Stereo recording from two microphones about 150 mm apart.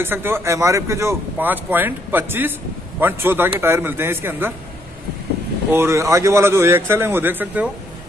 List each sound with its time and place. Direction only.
0.0 s speech: 15° right (ahead or behind)
5.7 s speech: 15° right (ahead or behind)